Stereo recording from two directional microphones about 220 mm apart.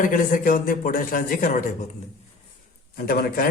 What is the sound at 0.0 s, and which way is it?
A man's voice, 40° left (ahead or behind).